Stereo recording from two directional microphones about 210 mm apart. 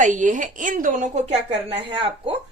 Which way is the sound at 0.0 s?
35° right (ahead or behind).